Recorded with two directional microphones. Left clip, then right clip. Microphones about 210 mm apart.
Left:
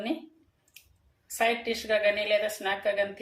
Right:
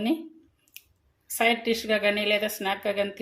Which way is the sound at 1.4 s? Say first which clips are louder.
Right 3 dB; 45° right (ahead or behind).